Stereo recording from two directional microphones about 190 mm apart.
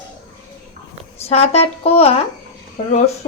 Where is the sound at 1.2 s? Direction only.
35° left (ahead or behind).